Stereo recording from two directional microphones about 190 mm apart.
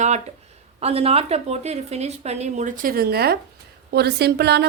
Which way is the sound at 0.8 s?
30° right (ahead or behind).